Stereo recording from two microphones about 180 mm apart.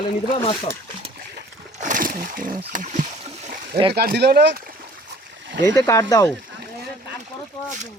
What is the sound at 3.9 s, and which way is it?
Speech, 60° right (ahead or behind).